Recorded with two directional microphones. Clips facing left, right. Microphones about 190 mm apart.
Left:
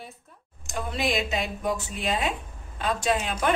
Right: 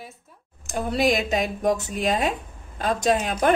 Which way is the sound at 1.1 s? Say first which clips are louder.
Right 4 dB; 40° right (ahead or behind).